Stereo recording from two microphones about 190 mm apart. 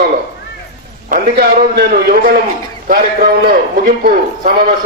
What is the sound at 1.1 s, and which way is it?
A man's voice, 50° right (ahead or behind).